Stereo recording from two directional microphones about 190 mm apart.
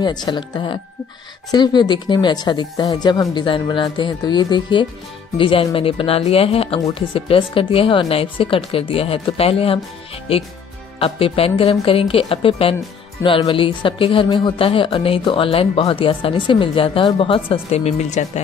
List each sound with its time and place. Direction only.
0.0 s speech: 20° left (ahead or behind)